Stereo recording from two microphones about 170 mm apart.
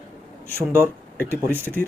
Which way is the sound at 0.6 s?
15° right (ahead or behind).